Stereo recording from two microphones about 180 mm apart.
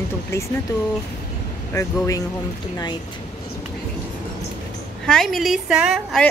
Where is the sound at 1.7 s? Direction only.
15° left (ahead or behind).